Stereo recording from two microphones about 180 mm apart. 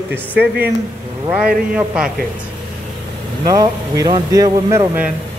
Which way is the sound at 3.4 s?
20° right (ahead or behind).